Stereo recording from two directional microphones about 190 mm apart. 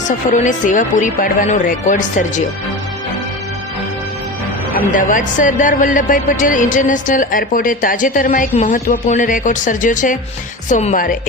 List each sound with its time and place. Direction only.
0.3 s a woman's voice: 40° left (ahead or behind)
4.9 s speech: 45° left (ahead or behind)